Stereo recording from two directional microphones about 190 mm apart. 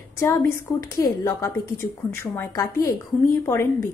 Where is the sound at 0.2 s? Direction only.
10° left (ahead or behind).